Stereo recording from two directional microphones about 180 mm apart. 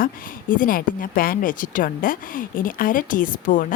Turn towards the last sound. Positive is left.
turn(degrees=50)  # may be behind; listen again after turning